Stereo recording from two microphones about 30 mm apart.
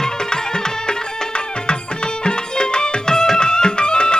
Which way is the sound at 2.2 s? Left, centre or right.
Left.